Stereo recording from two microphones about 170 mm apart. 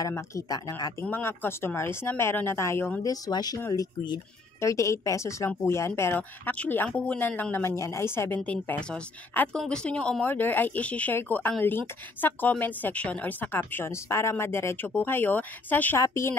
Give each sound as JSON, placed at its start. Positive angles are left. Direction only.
{"t": 0.0, "sound": "speech", "side_deg": 20}
{"t": 1.0, "sound": "a woman's voice", "side_deg": 10}